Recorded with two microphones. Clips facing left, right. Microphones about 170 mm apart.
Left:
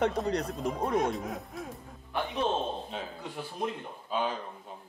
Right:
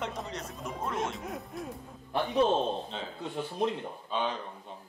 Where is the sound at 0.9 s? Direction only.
60° left (ahead or behind).